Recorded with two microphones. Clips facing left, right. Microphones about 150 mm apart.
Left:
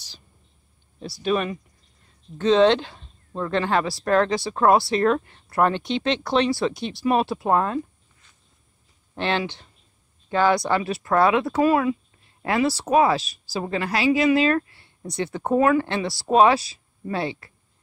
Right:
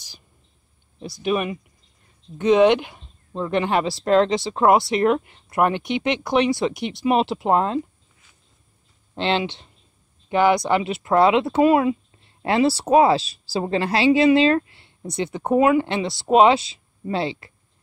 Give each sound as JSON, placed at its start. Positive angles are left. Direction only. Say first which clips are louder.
{"t": 0.9, "sound": "speech", "louder": "right 1 dB", "side_deg": -20}
{"t": 9.1, "sound": "speech", "louder": "right 2 dB", "side_deg": -20}